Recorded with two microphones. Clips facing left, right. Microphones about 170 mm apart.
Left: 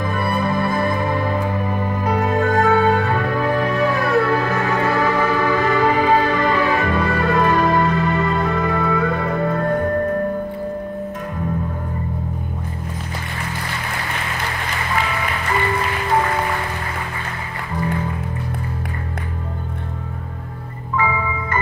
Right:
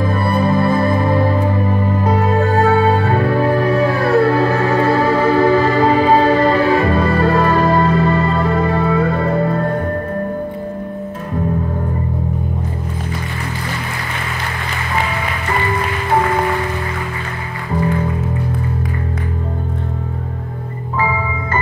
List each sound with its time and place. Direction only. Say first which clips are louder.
0.0 s music: right 4 dB; 30° right (ahead or behind)